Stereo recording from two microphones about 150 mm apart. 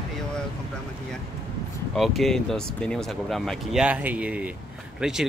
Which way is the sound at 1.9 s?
Centre (ahead or behind).